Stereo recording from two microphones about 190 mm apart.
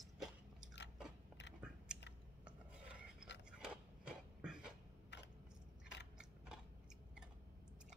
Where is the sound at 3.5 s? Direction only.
5° right (ahead or behind).